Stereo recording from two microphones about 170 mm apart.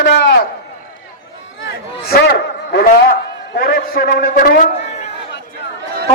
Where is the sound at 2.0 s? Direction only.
65° left (ahead or behind).